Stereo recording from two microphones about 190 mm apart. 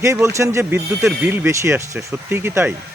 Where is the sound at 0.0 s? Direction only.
15° right (ahead or behind).